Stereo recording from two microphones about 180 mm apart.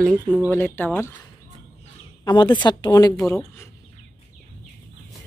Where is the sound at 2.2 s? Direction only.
25° left (ahead or behind).